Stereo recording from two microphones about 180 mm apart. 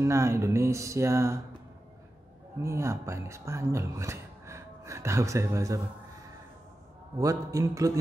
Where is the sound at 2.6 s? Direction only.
15° right (ahead or behind).